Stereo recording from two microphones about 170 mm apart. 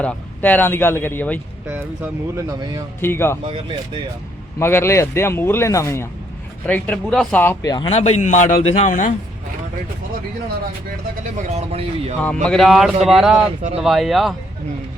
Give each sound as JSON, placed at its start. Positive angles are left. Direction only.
{"t": 0.0, "sound": "speech", "side_deg": 10}
{"t": 2.5, "sound": "speech", "side_deg": -20}
{"t": 3.0, "sound": "speech", "side_deg": 15}
{"t": 3.4, "sound": "speech", "side_deg": -35}
{"t": 4.6, "sound": "speech", "side_deg": 15}
{"t": 7.6, "sound": "speech", "side_deg": 20}
{"t": 7.9, "sound": "a man's voice", "side_deg": 40}
{"t": 11.4, "sound": "speech", "side_deg": -40}
{"t": 12.2, "sound": "speech", "side_deg": 5}